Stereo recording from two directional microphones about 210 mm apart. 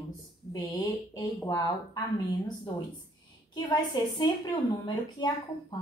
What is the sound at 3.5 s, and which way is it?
A woman's voice, 20° left (ahead or behind).